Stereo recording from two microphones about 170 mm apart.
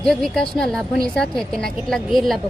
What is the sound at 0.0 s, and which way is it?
A woman's voice, centre (ahead or behind).